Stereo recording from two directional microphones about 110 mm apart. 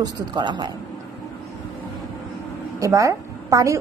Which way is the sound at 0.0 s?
40° right (ahead or behind).